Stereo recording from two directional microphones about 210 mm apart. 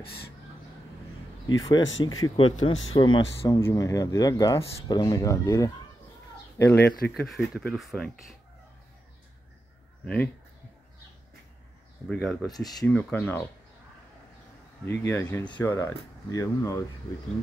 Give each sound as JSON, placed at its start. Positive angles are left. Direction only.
{"t": 1.5, "sound": "speech", "side_deg": 15}
{"t": 1.8, "sound": "speech", "side_deg": 65}
{"t": 2.2, "sound": "speech", "side_deg": 25}
{"t": 7.2, "sound": "speech", "side_deg": 0}
{"t": 10.0, "sound": "speech", "side_deg": 5}
{"t": 12.1, "sound": "speech", "side_deg": 0}
{"t": 12.5, "sound": "speech", "side_deg": 20}
{"t": 14.9, "sound": "speech", "side_deg": 10}